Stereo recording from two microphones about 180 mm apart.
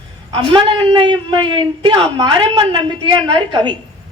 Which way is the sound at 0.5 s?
30° right (ahead or behind).